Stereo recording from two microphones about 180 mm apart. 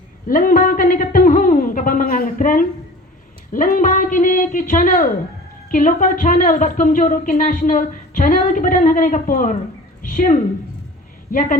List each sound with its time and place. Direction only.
0.3 s a woman's voice: 50° left (ahead or behind)
10.0 s a sound: 45° left (ahead or behind)
11.3 s a woman's voice: 50° left (ahead or behind)